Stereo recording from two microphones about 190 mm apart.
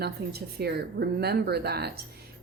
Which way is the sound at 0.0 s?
55° right (ahead or behind).